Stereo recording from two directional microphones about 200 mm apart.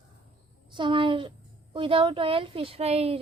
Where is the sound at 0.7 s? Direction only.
25° right (ahead or behind).